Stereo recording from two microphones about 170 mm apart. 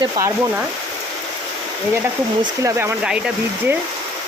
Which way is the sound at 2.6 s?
15° right (ahead or behind).